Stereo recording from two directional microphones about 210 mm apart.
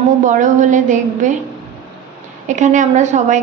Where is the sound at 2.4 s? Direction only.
35° right (ahead or behind).